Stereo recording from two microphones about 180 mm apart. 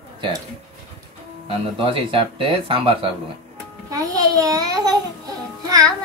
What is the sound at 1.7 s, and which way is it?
Speech, 30° right (ahead or behind).